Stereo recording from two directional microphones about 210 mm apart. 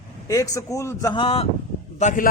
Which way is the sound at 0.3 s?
15° left (ahead or behind).